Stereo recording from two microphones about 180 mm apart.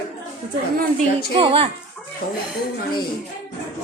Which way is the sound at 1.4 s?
30° right (ahead or behind).